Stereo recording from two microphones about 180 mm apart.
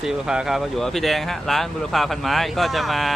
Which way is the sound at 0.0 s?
5° right (ahead or behind).